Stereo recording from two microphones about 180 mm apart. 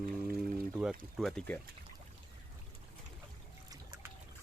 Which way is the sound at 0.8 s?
Centre (ahead or behind).